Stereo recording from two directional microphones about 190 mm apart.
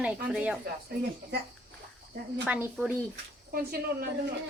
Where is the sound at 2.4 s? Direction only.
10° right (ahead or behind).